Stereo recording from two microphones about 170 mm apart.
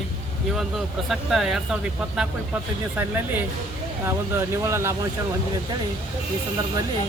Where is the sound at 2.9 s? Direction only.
10° right (ahead or behind).